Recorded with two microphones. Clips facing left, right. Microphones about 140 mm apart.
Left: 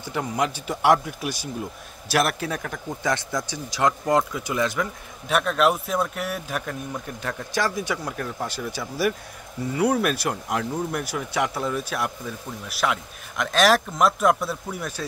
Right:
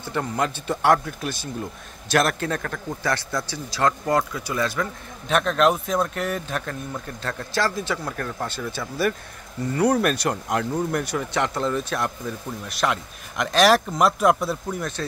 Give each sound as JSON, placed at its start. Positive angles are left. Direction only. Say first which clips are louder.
{"t": 0.0, "sound": "a man's voice", "louder": "even", "side_deg": 10}
{"t": 5.3, "sound": "a man's voice", "louder": "right 1 dB", "side_deg": 5}